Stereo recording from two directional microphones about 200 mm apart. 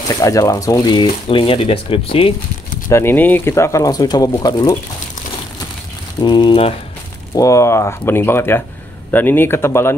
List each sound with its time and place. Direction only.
0.1 s speech: 15° left (ahead or behind)
2.9 s speech: 10° left (ahead or behind)
6.2 s speech: 25° left (ahead or behind)